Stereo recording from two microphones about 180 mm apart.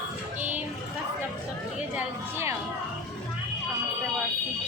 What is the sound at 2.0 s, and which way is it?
Music, 15° right (ahead or behind).